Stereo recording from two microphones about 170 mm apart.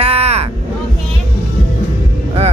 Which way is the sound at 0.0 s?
35° right (ahead or behind).